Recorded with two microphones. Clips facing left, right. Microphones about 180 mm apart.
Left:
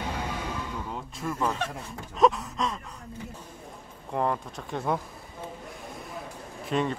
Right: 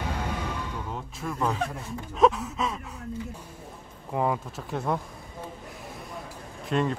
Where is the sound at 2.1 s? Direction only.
Centre (ahead or behind).